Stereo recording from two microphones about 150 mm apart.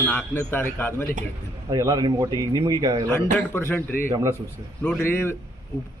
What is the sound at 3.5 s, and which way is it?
A man's voice, 15° left (ahead or behind).